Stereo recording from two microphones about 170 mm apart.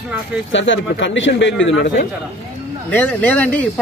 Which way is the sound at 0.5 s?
90° left.